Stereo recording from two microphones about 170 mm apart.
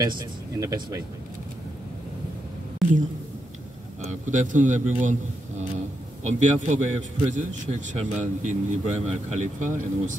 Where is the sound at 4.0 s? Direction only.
45° right (ahead or behind).